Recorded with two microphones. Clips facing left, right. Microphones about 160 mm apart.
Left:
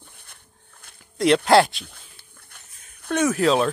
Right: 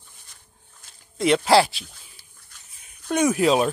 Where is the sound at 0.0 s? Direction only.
60° left (ahead or behind).